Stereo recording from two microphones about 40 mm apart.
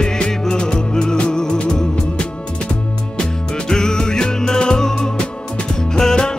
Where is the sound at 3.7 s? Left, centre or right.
Centre.